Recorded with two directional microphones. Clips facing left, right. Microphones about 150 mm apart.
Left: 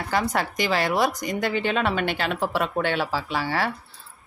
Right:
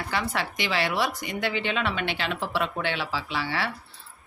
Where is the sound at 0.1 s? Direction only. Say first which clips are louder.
Left 6 dB; 40° left (ahead or behind).